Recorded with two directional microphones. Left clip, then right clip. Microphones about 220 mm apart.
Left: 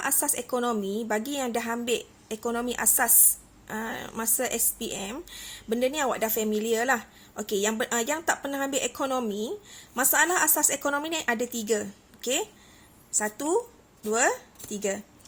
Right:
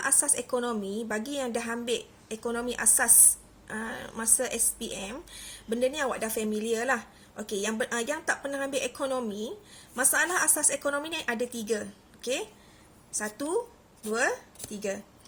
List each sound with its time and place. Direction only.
0.0 s speech: 45° left (ahead or behind)